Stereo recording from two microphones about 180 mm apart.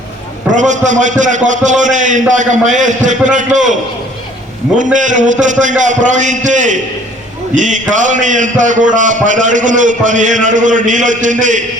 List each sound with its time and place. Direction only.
0.5 s a man's voice: 45° right (ahead or behind)
4.8 s a man's voice: 45° right (ahead or behind)